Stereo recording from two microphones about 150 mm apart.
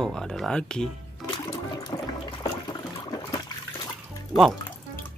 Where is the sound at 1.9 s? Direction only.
30° left (ahead or behind).